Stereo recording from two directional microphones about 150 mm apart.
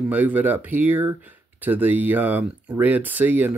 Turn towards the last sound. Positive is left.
turn(degrees=-10)  # may be behind; listen again after turning